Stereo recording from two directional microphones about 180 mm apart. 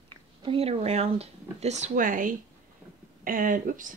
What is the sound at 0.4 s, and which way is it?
Speech, 30° right (ahead or behind).